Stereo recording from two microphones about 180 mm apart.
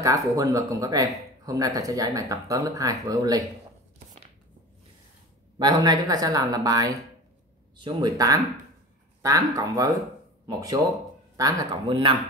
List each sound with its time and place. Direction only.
0.0 s speech: 20° right (ahead or behind)
5.6 s speech: 20° right (ahead or behind)